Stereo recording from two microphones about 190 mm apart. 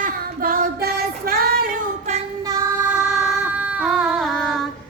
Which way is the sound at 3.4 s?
5° right (ahead or behind).